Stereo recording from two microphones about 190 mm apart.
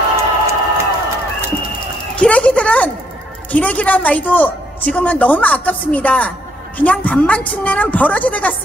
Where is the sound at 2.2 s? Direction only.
5° left (ahead or behind).